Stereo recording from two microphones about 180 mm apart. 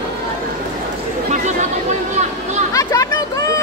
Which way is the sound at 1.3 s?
40° right (ahead or behind).